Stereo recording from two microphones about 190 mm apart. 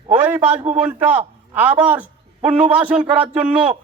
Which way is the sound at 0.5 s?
30° right (ahead or behind).